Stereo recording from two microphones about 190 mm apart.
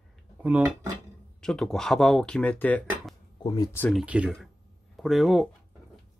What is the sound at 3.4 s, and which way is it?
Speech, 20° left (ahead or behind).